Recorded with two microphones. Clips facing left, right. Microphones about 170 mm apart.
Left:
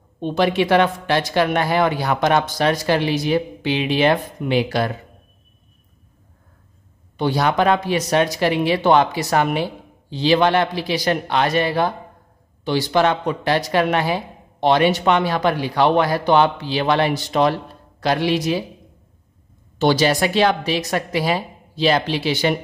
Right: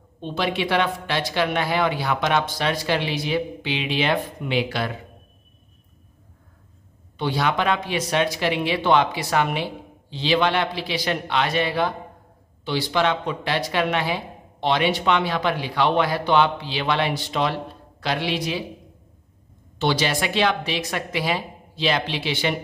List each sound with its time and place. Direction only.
0.2 s speech: 45° left (ahead or behind)
7.2 s speech: 45° left (ahead or behind)
19.8 s a woman's voice: 40° left (ahead or behind)